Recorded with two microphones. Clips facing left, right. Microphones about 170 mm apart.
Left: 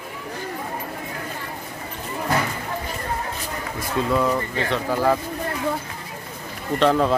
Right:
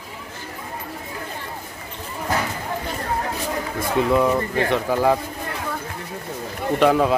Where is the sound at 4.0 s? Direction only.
15° right (ahead or behind).